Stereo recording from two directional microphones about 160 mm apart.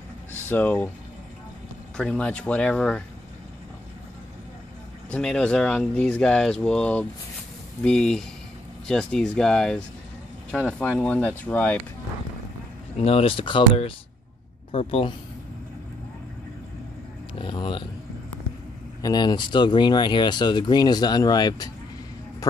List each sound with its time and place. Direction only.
0.3 s speech: 10° left (ahead or behind)
2.0 s speech: 5° left (ahead or behind)
5.1 s speech: 5° left (ahead or behind)
11.0 s speech: 10° left (ahead or behind)
13.0 s speech: 35° left (ahead or behind)
17.4 s speech: 30° left (ahead or behind)
19.0 s speech: 25° left (ahead or behind)